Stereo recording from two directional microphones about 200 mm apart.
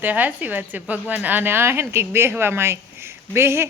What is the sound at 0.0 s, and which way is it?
A woman's voice, 10° right (ahead or behind).